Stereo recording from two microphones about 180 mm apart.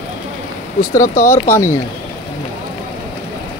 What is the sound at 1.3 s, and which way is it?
Speech, 15° left (ahead or behind).